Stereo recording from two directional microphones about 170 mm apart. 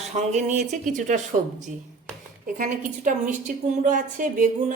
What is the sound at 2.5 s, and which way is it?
A woman's voice, 50° right (ahead or behind).